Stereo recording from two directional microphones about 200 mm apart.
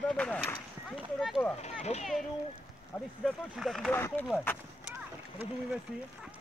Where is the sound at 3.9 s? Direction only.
10° left (ahead or behind).